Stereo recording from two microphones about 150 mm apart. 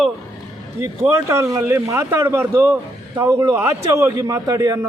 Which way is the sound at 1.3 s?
20° right (ahead or behind).